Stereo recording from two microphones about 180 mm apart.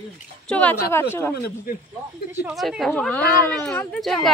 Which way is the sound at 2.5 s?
Centre (ahead or behind).